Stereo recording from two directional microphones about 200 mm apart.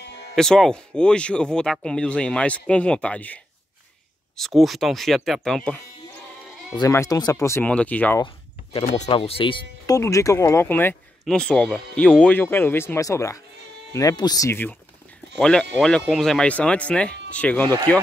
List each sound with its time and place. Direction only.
0.4 s speech: 5° left (ahead or behind)
4.4 s speech: centre (ahead or behind)
6.7 s speech: 15° left (ahead or behind)
8.7 s speech: 35° left (ahead or behind); by 18.0 s 10° left (ahead or behind)